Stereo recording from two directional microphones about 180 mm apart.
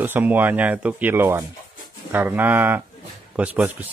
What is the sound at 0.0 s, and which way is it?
Speech, 10° right (ahead or behind).